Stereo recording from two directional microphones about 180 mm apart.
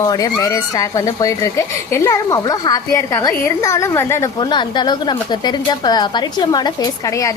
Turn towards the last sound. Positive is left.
turn(degrees=20)  # may be behind; listen again after turning